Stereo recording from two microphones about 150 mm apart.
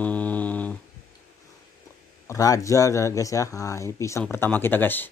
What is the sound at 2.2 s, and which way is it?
Speech, 20° left (ahead or behind).